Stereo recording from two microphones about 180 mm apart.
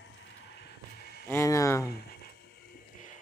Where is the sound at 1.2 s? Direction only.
15° left (ahead or behind).